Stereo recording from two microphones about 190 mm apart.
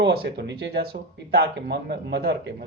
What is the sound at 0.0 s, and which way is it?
Speech, 65° right (ahead or behind).